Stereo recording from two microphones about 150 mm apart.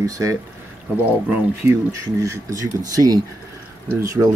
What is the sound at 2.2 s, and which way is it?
Speech, 20° right (ahead or behind).